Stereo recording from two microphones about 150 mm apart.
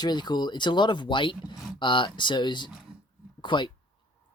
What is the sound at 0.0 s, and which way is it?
Speech, 30° left (ahead or behind).